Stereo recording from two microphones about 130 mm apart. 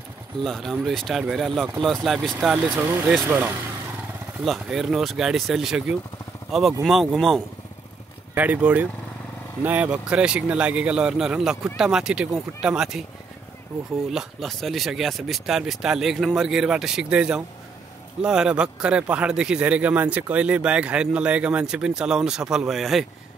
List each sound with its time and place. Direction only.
0.4 s speech: centre (ahead or behind)
2.7 s a man's voice: 15° right (ahead or behind)
4.5 s speech: centre (ahead or behind)
8.4 s a man's voice: 10° right (ahead or behind)
14.1 s a man's voice: centre (ahead or behind)